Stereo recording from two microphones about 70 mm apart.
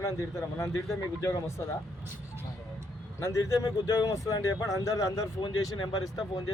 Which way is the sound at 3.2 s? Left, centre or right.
Left.